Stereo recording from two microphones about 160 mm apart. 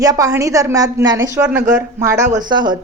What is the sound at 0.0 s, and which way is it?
Speech, 20° right (ahead or behind).